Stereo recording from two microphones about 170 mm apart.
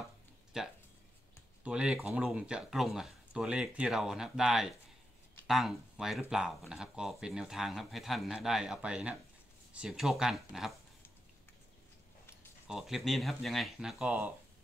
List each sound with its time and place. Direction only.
0.5 s speech: 5° right (ahead or behind)
12.6 s speech: 5° right (ahead or behind)